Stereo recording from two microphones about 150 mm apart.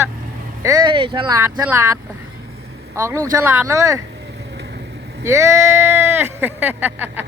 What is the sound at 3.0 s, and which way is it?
Speech, 20° right (ahead or behind).